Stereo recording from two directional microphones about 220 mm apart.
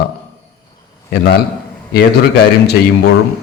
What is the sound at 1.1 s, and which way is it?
Speech, 50° left (ahead or behind).